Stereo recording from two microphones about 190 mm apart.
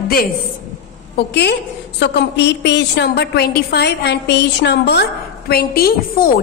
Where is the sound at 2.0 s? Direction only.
65° left (ahead or behind).